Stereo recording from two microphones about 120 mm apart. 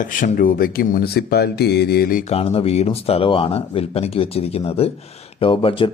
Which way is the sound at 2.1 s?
55° left (ahead or behind).